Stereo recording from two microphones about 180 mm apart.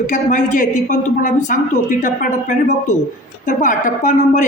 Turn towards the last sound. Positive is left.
turn(degrees=45)  # may be behind; listen again after turning